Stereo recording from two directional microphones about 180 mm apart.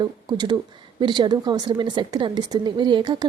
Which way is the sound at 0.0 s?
25° right (ahead or behind).